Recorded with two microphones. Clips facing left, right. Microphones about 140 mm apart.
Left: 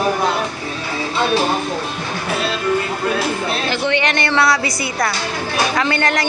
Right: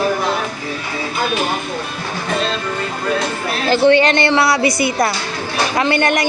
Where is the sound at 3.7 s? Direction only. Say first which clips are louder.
Right 10 dB; 35° right (ahead or behind).